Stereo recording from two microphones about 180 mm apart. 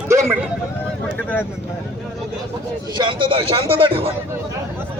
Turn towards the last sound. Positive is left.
turn(degrees=-30)  # may be behind; listen again after turning